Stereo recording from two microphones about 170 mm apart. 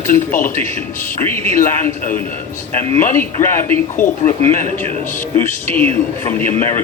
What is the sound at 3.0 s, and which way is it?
Speech, 15° left (ahead or behind).